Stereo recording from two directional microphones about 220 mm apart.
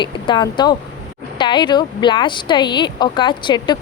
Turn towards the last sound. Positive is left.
turn(degrees=20)  # may be behind; listen again after turning